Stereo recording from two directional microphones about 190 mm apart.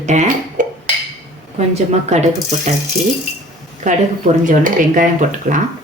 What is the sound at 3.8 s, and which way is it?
Speech, 40° right (ahead or behind).